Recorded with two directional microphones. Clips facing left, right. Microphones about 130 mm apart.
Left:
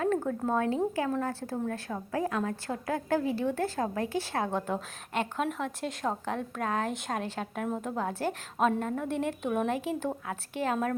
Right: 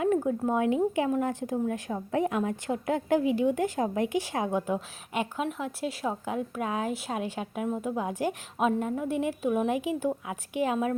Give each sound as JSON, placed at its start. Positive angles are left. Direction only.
{"t": 0.0, "sound": "a woman's voice", "side_deg": -15}